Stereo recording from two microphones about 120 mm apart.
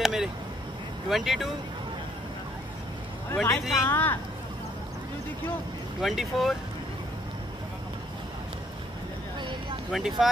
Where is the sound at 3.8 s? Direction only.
20° left (ahead or behind).